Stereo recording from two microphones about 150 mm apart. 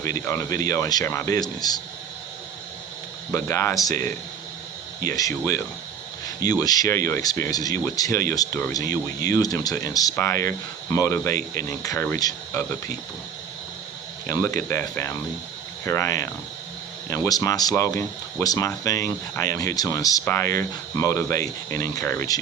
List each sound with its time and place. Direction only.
0.0 s speech: 20° left (ahead or behind)
3.3 s speech: 20° left (ahead or behind)
5.0 s speech: 25° left (ahead or behind)
14.3 s speech: 20° left (ahead or behind)